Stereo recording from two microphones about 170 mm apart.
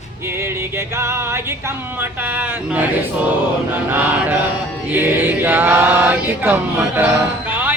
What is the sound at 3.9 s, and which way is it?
Speech, 10° right (ahead or behind).